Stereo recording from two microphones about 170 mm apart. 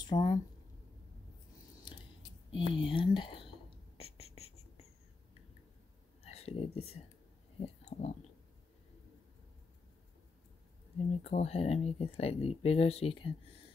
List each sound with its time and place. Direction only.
0.0 s speech: 25° left (ahead or behind)
2.7 s whispering: 30° left (ahead or behind)
6.2 s speech: 35° left (ahead or behind)
7.6 s a sound: 40° left (ahead or behind)
11.1 s speech: 40° left (ahead or behind)